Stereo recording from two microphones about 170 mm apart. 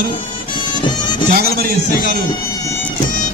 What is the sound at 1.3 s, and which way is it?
Speech, 65° right (ahead or behind).